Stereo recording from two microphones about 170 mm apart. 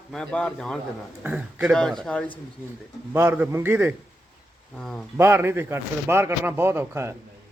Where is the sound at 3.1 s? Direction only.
10° right (ahead or behind).